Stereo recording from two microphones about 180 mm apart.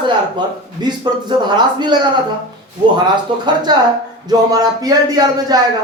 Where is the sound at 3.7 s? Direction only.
25° right (ahead or behind).